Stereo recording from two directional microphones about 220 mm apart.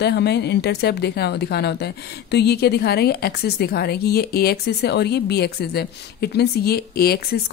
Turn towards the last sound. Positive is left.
turn(degrees=45)  # may be behind; listen again after turning